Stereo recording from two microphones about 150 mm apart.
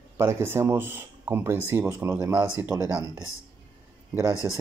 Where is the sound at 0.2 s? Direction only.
15° right (ahead or behind).